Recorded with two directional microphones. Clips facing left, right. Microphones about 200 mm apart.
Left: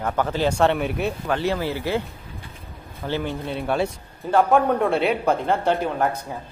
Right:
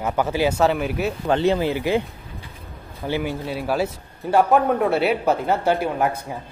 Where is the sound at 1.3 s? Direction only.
20° right (ahead or behind).